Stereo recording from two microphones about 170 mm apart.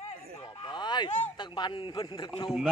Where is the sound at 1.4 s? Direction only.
25° left (ahead or behind).